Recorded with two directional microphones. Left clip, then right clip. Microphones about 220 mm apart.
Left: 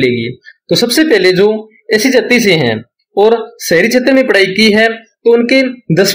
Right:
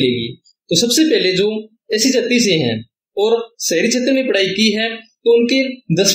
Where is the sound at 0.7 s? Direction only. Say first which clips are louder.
Left 4 dB; 30° left (ahead or behind).